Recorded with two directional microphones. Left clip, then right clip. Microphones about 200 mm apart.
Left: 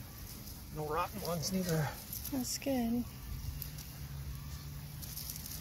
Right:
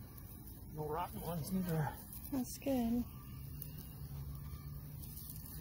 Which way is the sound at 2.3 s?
5° right (ahead or behind).